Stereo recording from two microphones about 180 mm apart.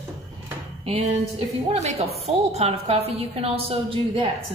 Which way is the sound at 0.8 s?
30° right (ahead or behind).